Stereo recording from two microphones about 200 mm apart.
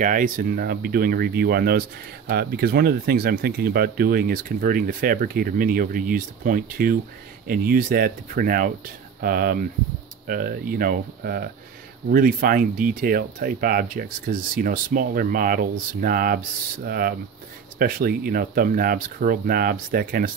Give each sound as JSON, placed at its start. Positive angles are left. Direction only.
{"t": 0.0, "sound": "speech", "side_deg": -40}